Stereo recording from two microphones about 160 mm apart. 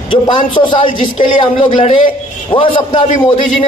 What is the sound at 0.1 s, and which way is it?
A man's voice, 30° left (ahead or behind).